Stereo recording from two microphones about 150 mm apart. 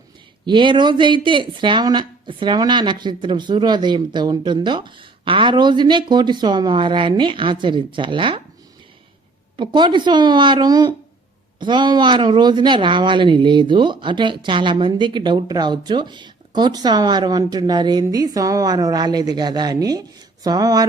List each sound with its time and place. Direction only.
0.4 s speech: 30° right (ahead or behind)
9.6 s speech: 30° right (ahead or behind)